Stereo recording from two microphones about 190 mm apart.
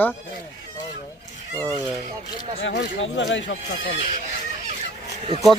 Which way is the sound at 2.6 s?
75° left (ahead or behind).